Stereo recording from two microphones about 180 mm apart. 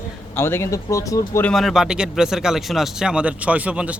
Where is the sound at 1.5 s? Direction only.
Centre (ahead or behind).